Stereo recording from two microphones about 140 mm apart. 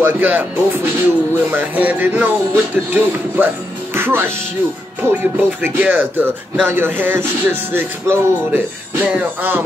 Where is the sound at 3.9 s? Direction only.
15° right (ahead or behind).